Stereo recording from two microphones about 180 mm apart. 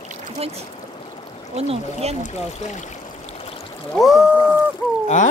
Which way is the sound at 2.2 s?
40° left (ahead or behind).